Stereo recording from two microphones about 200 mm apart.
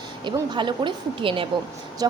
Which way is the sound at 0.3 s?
25° right (ahead or behind).